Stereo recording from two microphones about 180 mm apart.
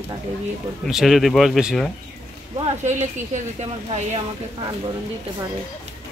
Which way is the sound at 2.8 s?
40° right (ahead or behind).